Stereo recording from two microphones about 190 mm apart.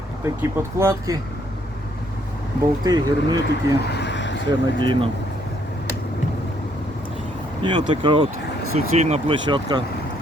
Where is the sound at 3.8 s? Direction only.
60° left (ahead or behind).